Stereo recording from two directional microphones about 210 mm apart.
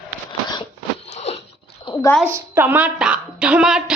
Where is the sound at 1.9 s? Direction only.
25° left (ahead or behind).